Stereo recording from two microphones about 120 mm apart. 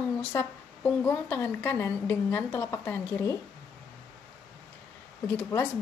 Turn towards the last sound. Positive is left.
turn(degrees=20)  # may be behind; listen again after turning